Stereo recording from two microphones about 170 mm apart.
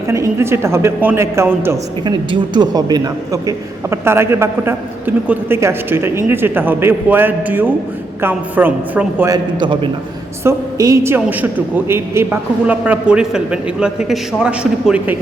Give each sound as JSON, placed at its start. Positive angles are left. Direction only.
{"t": 0.1, "sound": "a man's voice", "side_deg": -15}
{"t": 2.0, "sound": "a man's voice", "side_deg": -25}
{"t": 9.3, "sound": "a man's voice", "side_deg": -25}